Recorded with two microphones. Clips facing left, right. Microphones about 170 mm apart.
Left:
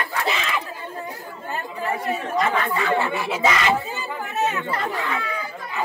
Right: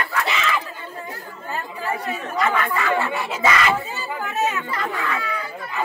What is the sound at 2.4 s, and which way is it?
Speech, 30° left (ahead or behind).